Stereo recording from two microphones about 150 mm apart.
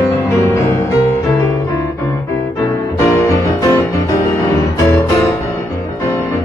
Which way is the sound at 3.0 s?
20° left (ahead or behind).